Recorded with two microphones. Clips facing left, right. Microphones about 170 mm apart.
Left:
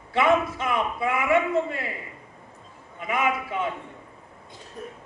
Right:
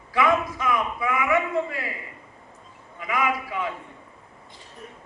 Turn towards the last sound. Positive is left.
turn(degrees=25)  # may be behind; listen again after turning